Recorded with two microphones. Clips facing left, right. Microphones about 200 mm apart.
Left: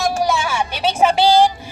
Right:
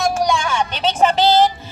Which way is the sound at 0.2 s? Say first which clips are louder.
Right 1 dB; 5° left (ahead or behind).